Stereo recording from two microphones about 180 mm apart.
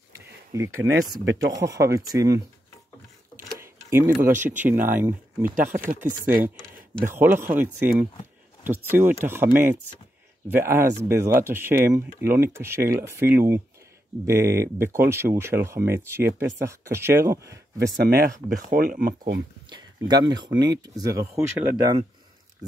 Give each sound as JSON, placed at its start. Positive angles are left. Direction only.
{"t": 0.1, "sound": "a sound", "side_deg": -15}
{"t": 1.5, "sound": "speech", "side_deg": -20}
{"t": 3.5, "sound": "speech", "side_deg": -10}
{"t": 7.1, "sound": "speech", "side_deg": -10}
{"t": 17.7, "sound": "speech", "side_deg": -60}
{"t": 19.7, "sound": "speech", "side_deg": -20}